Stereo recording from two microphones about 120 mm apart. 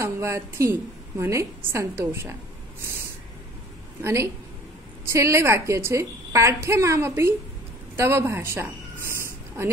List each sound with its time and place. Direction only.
0.0 s a woman's voice: 25° right (ahead or behind)
4.0 s a woman's voice: 25° right (ahead or behind)
7.9 s a sound: 20° right (ahead or behind)